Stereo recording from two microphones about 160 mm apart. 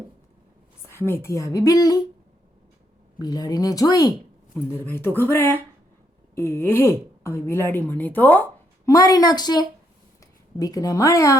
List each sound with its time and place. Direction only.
0.9 s speech: 15° left (ahead or behind)
3.2 s speech: 25° left (ahead or behind)
8.9 s speech: 25° left (ahead or behind)